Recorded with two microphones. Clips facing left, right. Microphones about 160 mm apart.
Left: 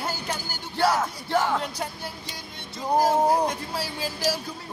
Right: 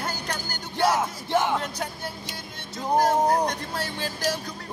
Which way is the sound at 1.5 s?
Centre (ahead or behind).